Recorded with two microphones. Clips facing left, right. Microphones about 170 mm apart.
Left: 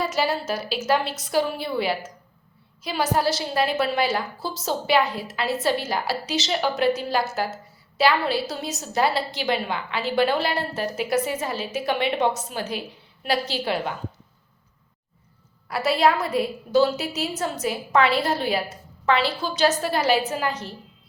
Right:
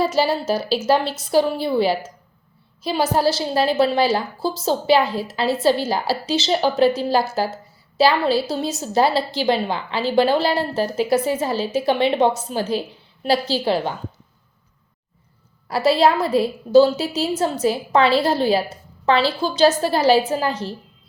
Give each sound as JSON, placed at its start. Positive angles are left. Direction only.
{"t": 0.0, "sound": "a woman's voice", "side_deg": -30}
{"t": 15.7, "sound": "a woman's voice", "side_deg": -30}